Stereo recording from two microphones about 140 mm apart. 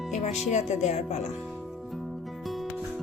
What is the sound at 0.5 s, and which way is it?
Speech, 55° left (ahead or behind).